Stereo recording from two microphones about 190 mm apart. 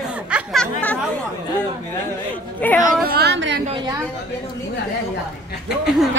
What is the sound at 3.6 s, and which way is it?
Speech, 25° right (ahead or behind).